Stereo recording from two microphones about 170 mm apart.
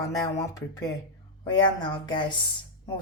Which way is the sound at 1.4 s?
25° left (ahead or behind).